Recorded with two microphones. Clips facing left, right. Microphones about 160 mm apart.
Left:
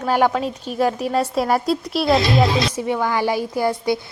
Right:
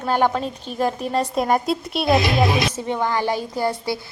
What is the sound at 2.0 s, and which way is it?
Speech, 20° right (ahead or behind).